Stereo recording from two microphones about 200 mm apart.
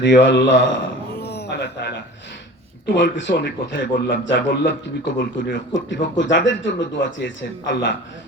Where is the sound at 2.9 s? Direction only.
60° left (ahead or behind).